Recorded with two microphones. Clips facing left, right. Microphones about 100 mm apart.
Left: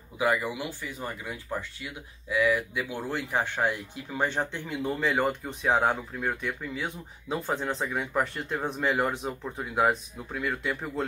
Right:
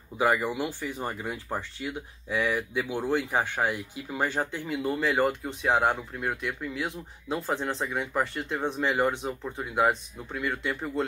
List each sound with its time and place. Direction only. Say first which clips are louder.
0.9 s speech: right 3 dB; 30° right (ahead or behind); by 11.1 s centre (ahead or behind)